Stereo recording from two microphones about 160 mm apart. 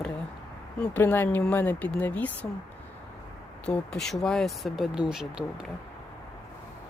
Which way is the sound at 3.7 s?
5° left (ahead or behind).